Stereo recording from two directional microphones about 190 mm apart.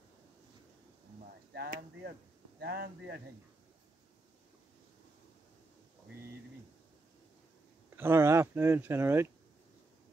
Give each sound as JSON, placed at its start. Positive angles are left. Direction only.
{"t": 1.5, "sound": "speech", "side_deg": -55}
{"t": 7.9, "sound": "speech", "side_deg": -15}